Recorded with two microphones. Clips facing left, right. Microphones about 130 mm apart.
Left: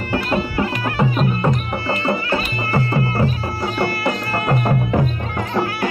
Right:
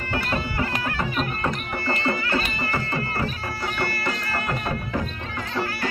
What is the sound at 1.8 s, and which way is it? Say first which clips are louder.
Music: left 4 dB; 30° left (ahead or behind).